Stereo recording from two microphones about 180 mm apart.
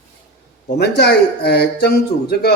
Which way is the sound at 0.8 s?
65° left (ahead or behind).